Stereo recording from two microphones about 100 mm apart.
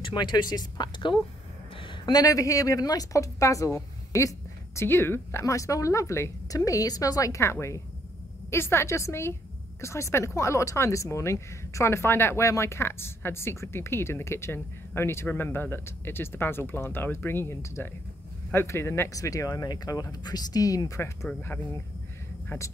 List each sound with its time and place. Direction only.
0.0 s speech: 50° left (ahead or behind)
1.8 s a sound: 55° left (ahead or behind)
2.1 s speech: 35° left (ahead or behind)